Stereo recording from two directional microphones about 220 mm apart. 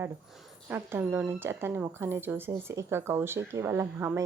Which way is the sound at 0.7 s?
10° right (ahead or behind).